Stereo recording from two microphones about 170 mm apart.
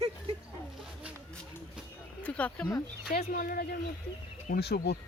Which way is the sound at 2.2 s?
10° left (ahead or behind).